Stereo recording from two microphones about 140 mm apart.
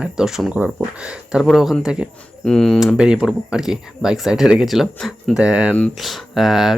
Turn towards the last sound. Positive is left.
turn(degrees=0)  # may be behind; listen again after turning